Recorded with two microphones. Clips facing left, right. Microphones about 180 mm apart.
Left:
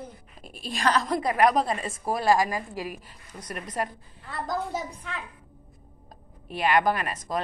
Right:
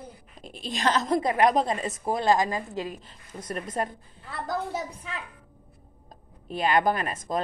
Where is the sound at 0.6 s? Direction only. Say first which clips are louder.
Even; 20° right (ahead or behind).